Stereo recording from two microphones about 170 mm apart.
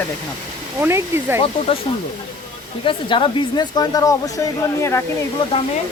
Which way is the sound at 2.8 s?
30° left (ahead or behind).